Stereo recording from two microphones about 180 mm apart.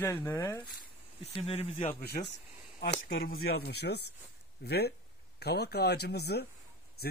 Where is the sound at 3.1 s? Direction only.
65° left (ahead or behind).